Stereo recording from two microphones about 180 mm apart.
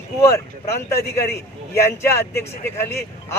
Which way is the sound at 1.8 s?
15° left (ahead or behind).